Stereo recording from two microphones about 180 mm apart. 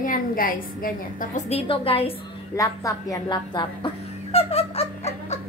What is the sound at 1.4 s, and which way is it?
Speech, 30° left (ahead or behind).